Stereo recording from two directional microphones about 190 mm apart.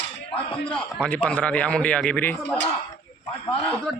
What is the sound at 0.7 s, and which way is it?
A man's voice, 5° left (ahead or behind).